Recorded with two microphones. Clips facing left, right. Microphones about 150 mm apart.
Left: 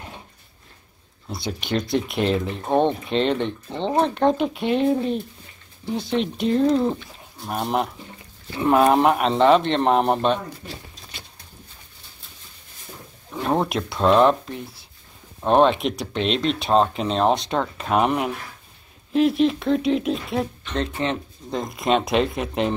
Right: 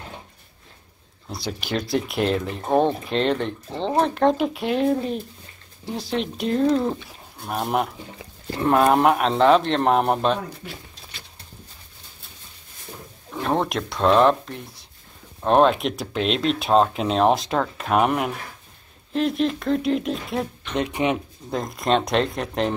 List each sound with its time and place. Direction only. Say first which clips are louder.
1.3 s speech: left 2 dB; centre (ahead or behind)
13.3 s speech: left 1 dB; 5° left (ahead or behind)
20.7 s speech: right 2 dB; 15° right (ahead or behind)
21.5 s speech: even; centre (ahead or behind)